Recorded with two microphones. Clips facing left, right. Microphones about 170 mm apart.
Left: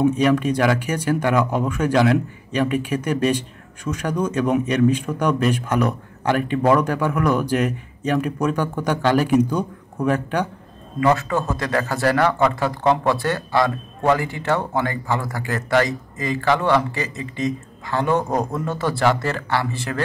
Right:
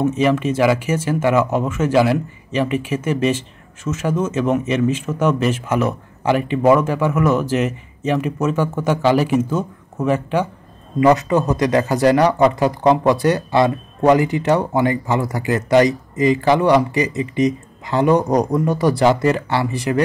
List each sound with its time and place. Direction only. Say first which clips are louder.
0.0 s speech: even; 5° right (ahead or behind)
11.0 s speech: right 5 dB; 20° right (ahead or behind)